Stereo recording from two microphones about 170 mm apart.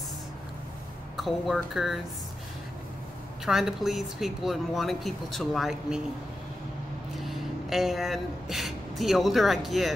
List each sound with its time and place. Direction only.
1.1 s speech: centre (ahead or behind)
3.4 s speech: centre (ahead or behind)
7.2 s speech: centre (ahead or behind)